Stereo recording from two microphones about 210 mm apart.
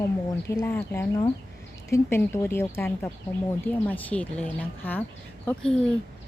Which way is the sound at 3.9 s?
5° left (ahead or behind).